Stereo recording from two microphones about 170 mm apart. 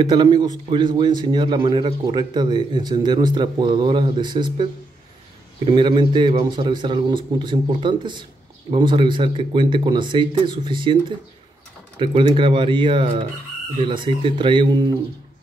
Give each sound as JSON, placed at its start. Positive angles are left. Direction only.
{"t": 0.0, "sound": "a man's voice", "side_deg": -25}
{"t": 5.7, "sound": "a man's voice", "side_deg": -30}